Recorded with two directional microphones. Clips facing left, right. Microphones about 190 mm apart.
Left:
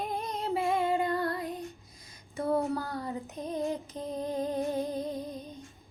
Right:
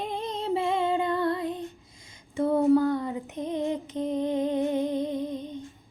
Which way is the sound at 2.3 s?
25° right (ahead or behind).